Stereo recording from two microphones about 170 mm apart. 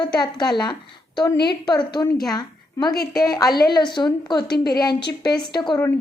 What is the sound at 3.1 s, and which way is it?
A woman's voice, 20° left (ahead or behind).